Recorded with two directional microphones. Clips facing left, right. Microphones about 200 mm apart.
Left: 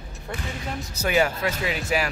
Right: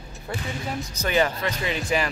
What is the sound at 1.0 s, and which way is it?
Speech, 10° left (ahead or behind).